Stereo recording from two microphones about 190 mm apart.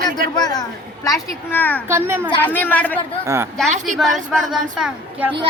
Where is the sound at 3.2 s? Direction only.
15° right (ahead or behind).